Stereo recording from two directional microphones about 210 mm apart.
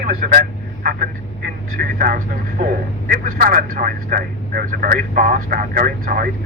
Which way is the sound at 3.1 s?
45° right (ahead or behind).